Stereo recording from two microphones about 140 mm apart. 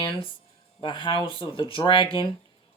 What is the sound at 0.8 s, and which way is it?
Speech, 35° left (ahead or behind).